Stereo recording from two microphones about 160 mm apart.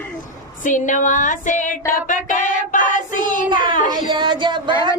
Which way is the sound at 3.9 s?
30° right (ahead or behind).